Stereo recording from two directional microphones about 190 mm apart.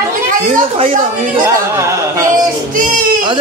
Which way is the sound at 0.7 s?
30° right (ahead or behind).